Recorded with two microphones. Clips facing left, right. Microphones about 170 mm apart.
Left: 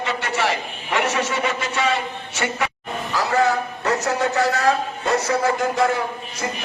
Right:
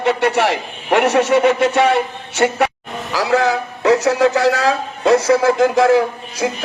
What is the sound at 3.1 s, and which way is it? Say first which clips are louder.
A man's voice: right 4 dB; 85° right.